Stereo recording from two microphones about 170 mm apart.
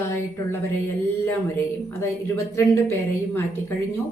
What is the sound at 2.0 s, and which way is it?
Speech, 15° left (ahead or behind).